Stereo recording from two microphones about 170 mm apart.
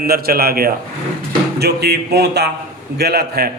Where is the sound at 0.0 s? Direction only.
65° right (ahead or behind).